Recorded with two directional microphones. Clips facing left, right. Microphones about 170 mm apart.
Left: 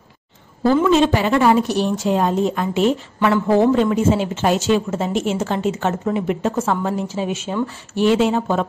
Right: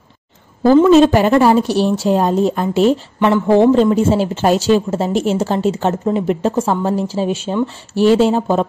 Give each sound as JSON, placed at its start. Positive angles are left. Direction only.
{"t": 0.8, "sound": "speech", "side_deg": -40}
{"t": 1.4, "sound": "speech", "side_deg": -30}